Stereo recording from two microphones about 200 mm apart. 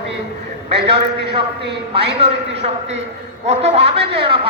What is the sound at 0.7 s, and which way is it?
Speech, 30° right (ahead or behind).